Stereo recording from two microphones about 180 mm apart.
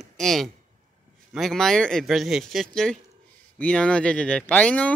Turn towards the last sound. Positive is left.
turn(degrees=10)  # may be behind; listen again after turning